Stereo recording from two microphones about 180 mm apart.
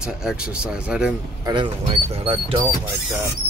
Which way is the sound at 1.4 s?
25° right (ahead or behind).